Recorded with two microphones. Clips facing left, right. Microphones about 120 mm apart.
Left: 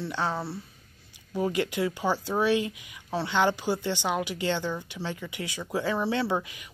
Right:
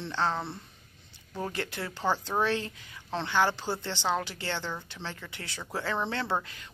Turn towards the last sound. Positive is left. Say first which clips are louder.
# left 3 dB
turn(degrees=15)  # may be behind; listen again after turning